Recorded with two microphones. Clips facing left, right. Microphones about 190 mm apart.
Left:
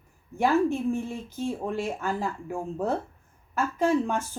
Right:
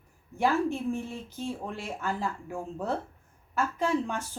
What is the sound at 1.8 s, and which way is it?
A woman's voice, 45° left (ahead or behind).